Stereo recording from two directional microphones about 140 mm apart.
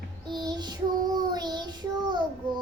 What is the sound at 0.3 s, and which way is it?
Child singing, 30° right (ahead or behind).